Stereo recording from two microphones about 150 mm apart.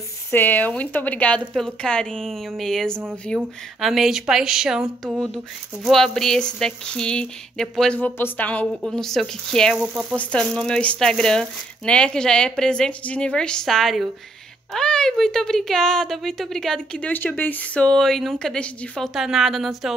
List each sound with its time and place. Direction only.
0.3 s speech: 10° left (ahead or behind)